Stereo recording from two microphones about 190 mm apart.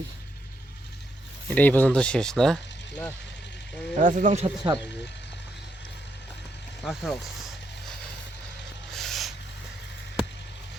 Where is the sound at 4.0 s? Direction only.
40° right (ahead or behind).